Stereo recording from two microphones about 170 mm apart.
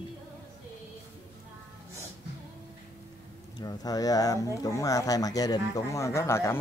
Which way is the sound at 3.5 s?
20° left (ahead or behind).